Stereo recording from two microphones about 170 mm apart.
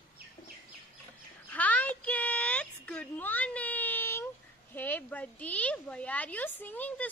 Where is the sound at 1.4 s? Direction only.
10° left (ahead or behind).